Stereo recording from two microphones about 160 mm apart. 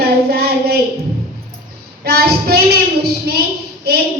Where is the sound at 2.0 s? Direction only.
80° right.